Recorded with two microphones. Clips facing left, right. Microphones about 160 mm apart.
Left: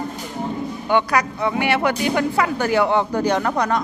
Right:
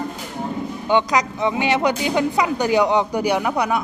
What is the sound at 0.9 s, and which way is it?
Speech, 15° right (ahead or behind).